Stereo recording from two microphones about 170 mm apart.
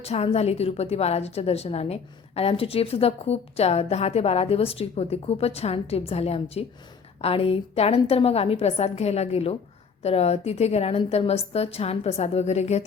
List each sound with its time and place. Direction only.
0.0 s a woman's voice: 35° left (ahead or behind)